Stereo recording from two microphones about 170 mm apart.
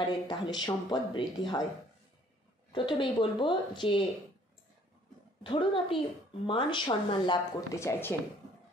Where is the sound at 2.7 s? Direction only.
30° left (ahead or behind).